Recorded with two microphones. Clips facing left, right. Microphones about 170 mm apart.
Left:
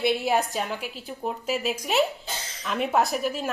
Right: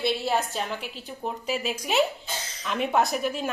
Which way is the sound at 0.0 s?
15° left (ahead or behind).